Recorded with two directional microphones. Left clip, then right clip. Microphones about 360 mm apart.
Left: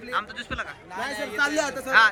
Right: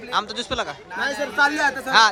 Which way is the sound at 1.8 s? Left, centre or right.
Centre.